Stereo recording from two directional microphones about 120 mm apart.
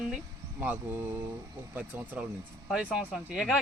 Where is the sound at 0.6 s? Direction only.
15° right (ahead or behind).